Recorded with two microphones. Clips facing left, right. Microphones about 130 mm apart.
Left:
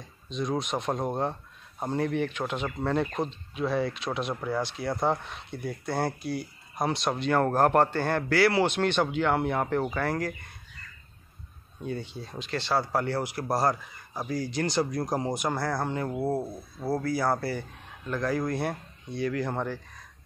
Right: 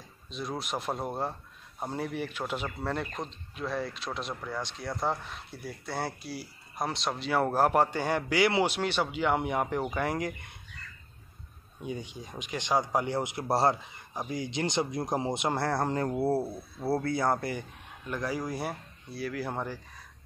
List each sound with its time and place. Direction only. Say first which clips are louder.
0.0 s speech: left 6 dB; 5° right (ahead or behind)
8.7 s speech: left 4 dB; 5° right (ahead or behind)
11.8 s speech: left 3 dB; 15° right (ahead or behind); by 16.1 s 35° right (ahead or behind)
16.3 s speech: right 1 dB; 5° right (ahead or behind)
16.9 s speech: left 1 dB; 25° right (ahead or behind); by 19.8 s 10° right (ahead or behind)